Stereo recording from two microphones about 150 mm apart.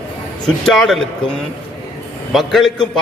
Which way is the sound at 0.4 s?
5° left (ahead or behind).